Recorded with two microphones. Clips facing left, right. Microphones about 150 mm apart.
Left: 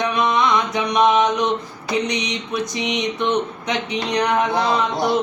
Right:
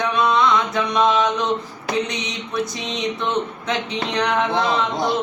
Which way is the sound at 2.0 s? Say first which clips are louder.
Left 4 dB; 15° left (ahead or behind).